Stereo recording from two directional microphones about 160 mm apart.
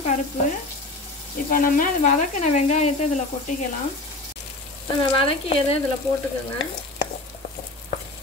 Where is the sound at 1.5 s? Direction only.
55° left (ahead or behind).